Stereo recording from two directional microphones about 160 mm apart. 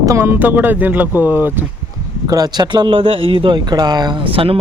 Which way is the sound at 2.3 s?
25° right (ahead or behind).